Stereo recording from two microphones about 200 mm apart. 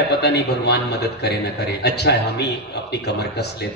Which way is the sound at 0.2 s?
55° left (ahead or behind).